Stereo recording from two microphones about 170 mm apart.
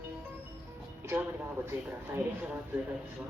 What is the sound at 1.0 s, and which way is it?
Speech, 15° right (ahead or behind).